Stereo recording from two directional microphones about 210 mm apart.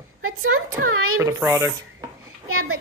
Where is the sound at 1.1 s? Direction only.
15° right (ahead or behind).